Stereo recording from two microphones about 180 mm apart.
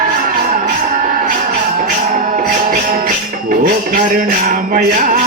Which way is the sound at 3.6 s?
50° right (ahead or behind).